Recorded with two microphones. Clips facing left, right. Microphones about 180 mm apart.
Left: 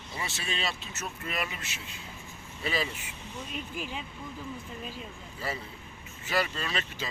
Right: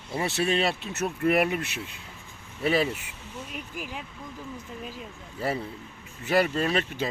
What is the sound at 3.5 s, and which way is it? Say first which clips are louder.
Speech: left 1 dB; 10° right (ahead or behind).